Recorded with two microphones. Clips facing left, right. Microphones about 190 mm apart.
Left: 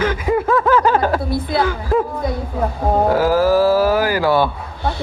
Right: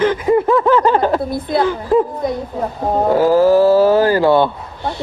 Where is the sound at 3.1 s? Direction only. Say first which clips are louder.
Right 6 dB; 20° right (ahead or behind).